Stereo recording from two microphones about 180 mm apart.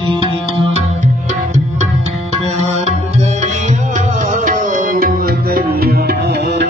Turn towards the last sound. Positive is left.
turn(degrees=-60)  # may be behind; listen again after turning